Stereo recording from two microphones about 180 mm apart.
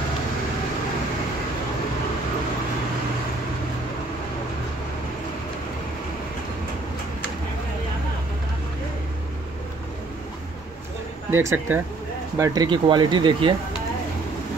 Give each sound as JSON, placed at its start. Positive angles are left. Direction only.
{"t": 11.2, "sound": "speech", "side_deg": -10}
{"t": 12.4, "sound": "speech", "side_deg": -25}